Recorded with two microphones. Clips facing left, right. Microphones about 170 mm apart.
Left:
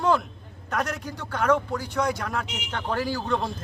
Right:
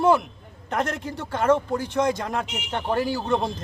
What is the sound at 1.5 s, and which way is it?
Speech, 25° right (ahead or behind).